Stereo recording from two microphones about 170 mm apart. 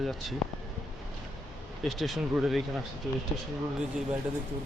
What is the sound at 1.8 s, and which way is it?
Speech, centre (ahead or behind).